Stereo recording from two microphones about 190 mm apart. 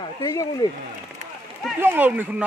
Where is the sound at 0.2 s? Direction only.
20° left (ahead or behind).